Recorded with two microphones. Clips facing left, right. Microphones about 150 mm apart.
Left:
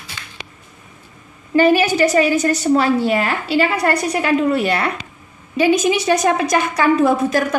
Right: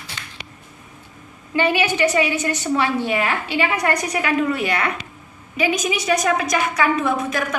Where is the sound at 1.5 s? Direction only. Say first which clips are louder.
Left 6 dB; 40° left (ahead or behind).